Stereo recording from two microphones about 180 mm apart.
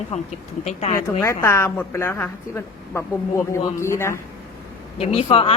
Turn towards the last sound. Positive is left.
turn(degrees=30)  # may be behind; listen again after turning